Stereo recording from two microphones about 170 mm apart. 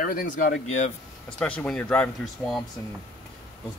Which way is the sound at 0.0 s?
55° left (ahead or behind).